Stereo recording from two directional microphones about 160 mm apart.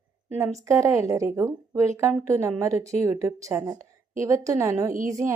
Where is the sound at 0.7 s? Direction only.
15° right (ahead or behind).